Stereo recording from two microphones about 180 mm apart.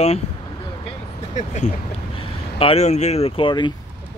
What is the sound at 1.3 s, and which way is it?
Speech, 40° left (ahead or behind).